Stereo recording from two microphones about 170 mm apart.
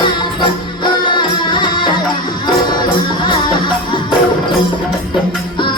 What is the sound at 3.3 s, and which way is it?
Music, 30° left (ahead or behind).